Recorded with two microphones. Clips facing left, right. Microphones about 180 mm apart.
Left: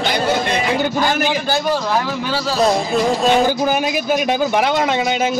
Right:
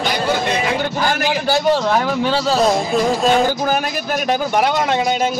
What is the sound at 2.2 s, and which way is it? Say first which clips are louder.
Speech: right 4 dB; 25° right (ahead or behind).